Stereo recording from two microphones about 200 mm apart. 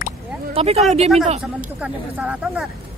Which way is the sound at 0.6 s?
30° right (ahead or behind).